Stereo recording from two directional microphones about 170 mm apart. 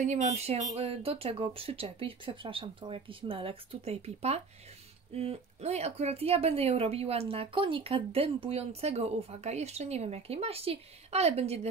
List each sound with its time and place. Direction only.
0.0 s speech: 45° right (ahead or behind)